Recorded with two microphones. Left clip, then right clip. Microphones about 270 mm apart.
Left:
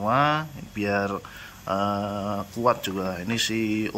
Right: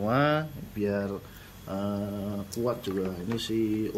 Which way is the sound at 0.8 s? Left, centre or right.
Left.